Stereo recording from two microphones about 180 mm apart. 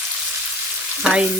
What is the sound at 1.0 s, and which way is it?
Frying, 5° right (ahead or behind).